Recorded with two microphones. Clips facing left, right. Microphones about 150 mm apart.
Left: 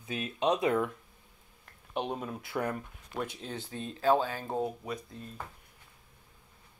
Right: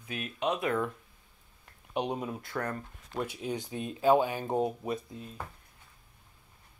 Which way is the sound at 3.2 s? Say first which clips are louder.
Right 3 dB; 10° right (ahead or behind).